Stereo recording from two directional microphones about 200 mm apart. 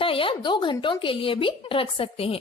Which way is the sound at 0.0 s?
25° left (ahead or behind).